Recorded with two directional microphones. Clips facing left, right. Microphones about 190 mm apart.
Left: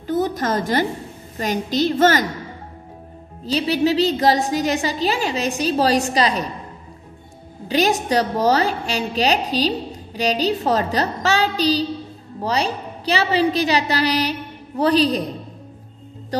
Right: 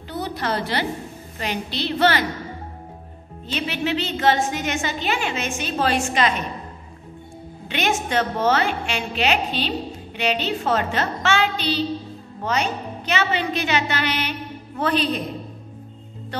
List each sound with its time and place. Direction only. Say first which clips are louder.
0.0 s a sound: left 7 dB; 45° left (ahead or behind)
1.4 s a woman's voice: left 7 dB; 45° left (ahead or behind)
3.4 s a woman's voice: left 7 dB; 35° left (ahead or behind)
7.6 s a woman's voice: left 5 dB; 35° left (ahead or behind)